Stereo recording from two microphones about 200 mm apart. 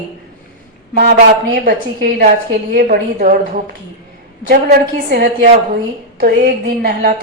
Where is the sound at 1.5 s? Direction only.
50° right (ahead or behind).